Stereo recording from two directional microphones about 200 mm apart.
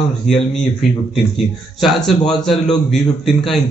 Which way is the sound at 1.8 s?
Centre (ahead or behind).